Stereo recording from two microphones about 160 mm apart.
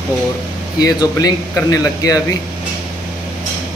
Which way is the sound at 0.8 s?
25° left (ahead or behind).